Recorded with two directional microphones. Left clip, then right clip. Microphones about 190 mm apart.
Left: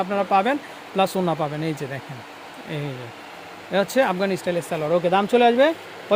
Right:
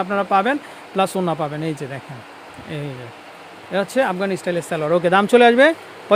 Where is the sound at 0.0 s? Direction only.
20° right (ahead or behind).